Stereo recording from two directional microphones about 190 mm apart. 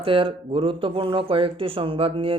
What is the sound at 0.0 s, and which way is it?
Speech, 30° right (ahead or behind).